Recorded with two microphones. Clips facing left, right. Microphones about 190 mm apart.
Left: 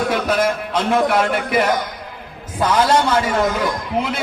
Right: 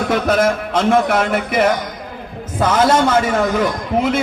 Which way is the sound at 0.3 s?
45° right (ahead or behind).